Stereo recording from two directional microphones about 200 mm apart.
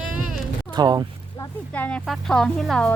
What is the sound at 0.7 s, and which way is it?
Speech, 20° right (ahead or behind).